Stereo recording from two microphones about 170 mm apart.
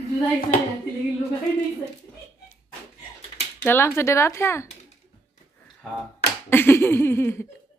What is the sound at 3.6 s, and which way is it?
Speech, 15° left (ahead or behind).